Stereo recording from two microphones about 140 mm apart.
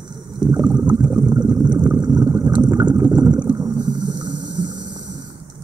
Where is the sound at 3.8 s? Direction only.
30° right (ahead or behind).